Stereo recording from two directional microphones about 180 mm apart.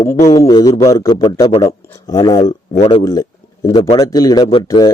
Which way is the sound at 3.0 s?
20° left (ahead or behind).